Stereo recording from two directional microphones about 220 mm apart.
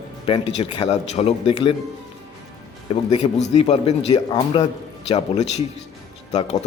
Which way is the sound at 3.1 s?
30° left (ahead or behind).